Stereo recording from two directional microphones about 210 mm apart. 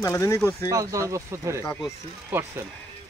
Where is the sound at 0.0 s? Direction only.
15° left (ahead or behind).